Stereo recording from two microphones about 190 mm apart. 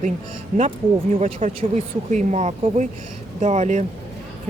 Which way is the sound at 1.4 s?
30° right (ahead or behind).